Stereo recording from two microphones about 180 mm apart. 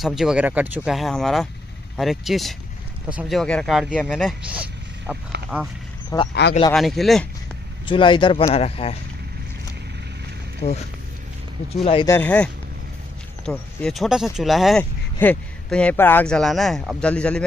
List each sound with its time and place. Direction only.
0.0 s speech: centre (ahead or behind)
6.1 s speech: 20° left (ahead or behind)
6.7 s speech: centre (ahead or behind)
7.8 s speech: 25° left (ahead or behind)
10.6 s speech: 35° left (ahead or behind)
11.8 s speech: 35° left (ahead or behind)
12.1 s speech: 10° left (ahead or behind)
13.5 s speech: 5° left (ahead or behind)